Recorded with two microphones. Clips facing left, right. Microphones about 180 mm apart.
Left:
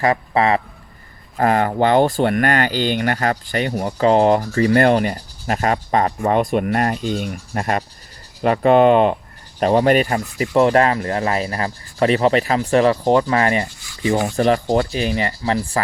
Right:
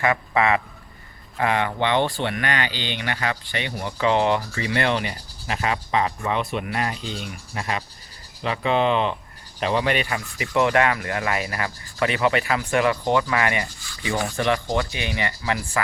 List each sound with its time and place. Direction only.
0.0 s speech: 35° left (ahead or behind)